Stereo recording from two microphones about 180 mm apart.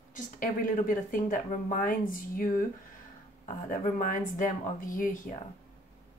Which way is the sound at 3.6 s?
45° left (ahead or behind).